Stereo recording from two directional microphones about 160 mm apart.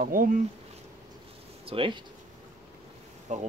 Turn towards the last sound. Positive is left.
turn(degrees=-50)  # may be behind; listen again after turning